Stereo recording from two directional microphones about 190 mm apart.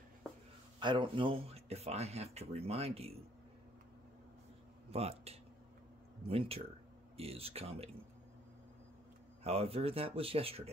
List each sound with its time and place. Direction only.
0.7 s speech: 25° right (ahead or behind)
4.9 s speech: 35° right (ahead or behind)
9.4 s speech: 30° right (ahead or behind)